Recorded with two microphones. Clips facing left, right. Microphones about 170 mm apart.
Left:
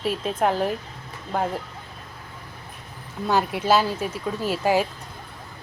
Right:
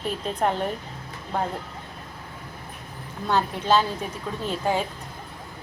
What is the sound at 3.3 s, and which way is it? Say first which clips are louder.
A woman's voice: left 2 dB; 10° left (ahead or behind).